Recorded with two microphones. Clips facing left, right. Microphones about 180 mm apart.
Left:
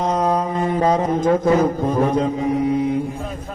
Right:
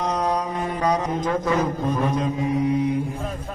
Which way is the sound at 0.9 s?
25° left (ahead or behind).